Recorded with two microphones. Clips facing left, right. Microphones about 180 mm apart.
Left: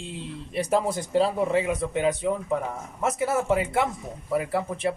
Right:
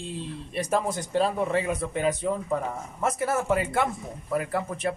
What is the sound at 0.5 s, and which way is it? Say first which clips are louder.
A man's voice: left 2 dB; 15° left (ahead or behind).